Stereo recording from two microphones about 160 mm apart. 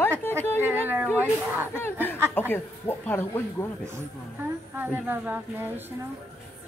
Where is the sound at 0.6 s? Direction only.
15° right (ahead or behind).